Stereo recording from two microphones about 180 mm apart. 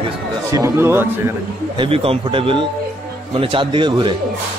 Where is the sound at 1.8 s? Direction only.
30° right (ahead or behind).